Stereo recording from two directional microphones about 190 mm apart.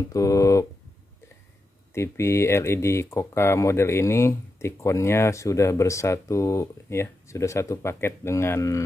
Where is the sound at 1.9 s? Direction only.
15° left (ahead or behind).